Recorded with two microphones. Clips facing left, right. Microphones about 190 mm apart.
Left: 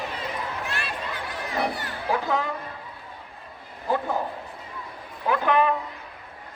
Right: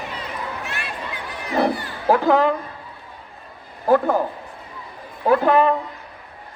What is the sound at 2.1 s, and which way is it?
Speech, 70° right (ahead or behind).